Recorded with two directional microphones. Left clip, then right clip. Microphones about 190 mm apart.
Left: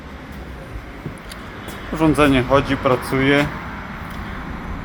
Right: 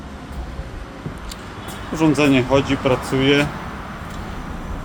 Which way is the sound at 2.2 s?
5° right (ahead or behind).